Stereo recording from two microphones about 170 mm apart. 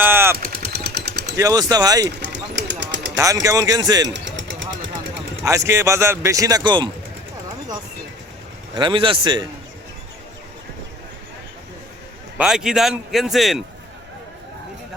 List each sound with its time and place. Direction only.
0.0 s vehicle: 15° right (ahead or behind)
0.3 s vehicle: 60° right (ahead or behind)
1.4 s speech: 20° right (ahead or behind)
2.2 s a sound: 90° right
3.2 s speech: 20° right (ahead or behind)
4.1 s a sound: 90° right
5.5 s speech: 15° right (ahead or behind)
8.7 s speech: 30° right (ahead or behind)
12.4 s a man's voice: 5° right (ahead or behind)